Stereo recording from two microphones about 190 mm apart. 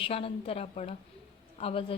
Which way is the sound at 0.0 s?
30° left (ahead or behind).